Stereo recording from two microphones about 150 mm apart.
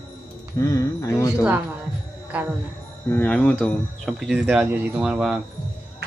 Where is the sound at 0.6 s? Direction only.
20° left (ahead or behind).